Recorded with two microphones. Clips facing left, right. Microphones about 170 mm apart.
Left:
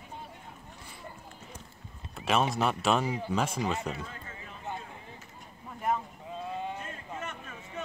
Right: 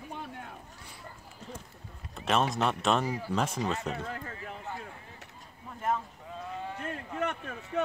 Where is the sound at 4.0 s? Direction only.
65° right (ahead or behind).